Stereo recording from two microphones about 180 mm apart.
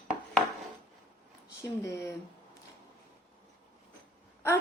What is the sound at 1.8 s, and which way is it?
Speech, 15° left (ahead or behind).